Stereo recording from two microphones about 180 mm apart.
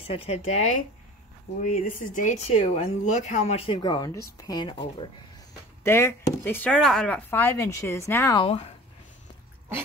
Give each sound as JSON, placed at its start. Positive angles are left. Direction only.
{"t": 0.0, "sound": "speech", "side_deg": 35}
{"t": 5.9, "sound": "speech", "side_deg": 15}
{"t": 8.5, "sound": "speech", "side_deg": 30}